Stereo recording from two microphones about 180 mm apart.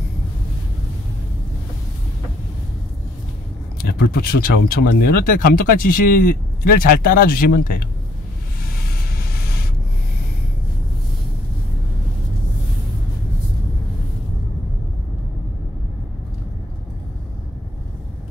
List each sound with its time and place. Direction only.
3.8 s speech: 55° left (ahead or behind)
9.3 s rub: 55° left (ahead or behind)